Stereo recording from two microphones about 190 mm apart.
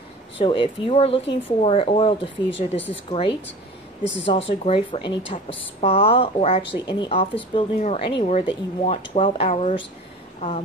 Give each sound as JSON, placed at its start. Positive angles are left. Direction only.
{"t": 0.4, "sound": "speech", "side_deg": 30}
{"t": 2.3, "sound": "speech", "side_deg": 75}
{"t": 3.1, "sound": "speech", "side_deg": 25}
{"t": 4.0, "sound": "speech", "side_deg": 70}
{"t": 4.3, "sound": "speech", "side_deg": 30}